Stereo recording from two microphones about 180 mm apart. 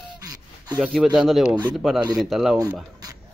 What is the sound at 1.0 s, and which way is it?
A man's voice, 5° right (ahead or behind).